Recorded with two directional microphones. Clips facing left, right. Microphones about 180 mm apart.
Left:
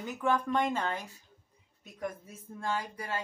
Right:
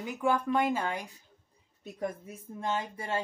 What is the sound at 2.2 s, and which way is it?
Speech, 20° right (ahead or behind).